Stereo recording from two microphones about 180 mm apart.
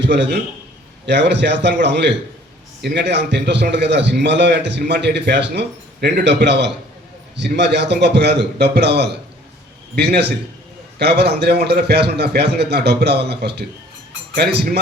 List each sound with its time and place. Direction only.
0.0 s a man's voice: 75° right (ahead or behind)